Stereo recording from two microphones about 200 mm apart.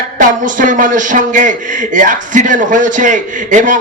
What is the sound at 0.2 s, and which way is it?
A man's voice, 40° right (ahead or behind).